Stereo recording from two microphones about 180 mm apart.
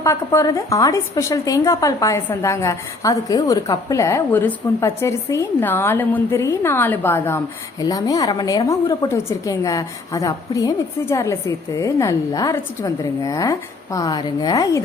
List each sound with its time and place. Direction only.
0.0 s a woman's voice: 15° left (ahead or behind)